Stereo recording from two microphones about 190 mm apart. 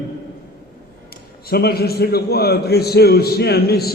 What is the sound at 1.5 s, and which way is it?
A man's voice, 55° left (ahead or behind).